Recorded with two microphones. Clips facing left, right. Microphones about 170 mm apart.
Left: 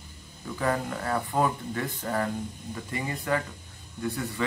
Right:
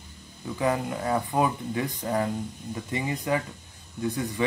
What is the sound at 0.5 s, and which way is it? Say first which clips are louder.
Speech: right 2 dB; 15° right (ahead or behind).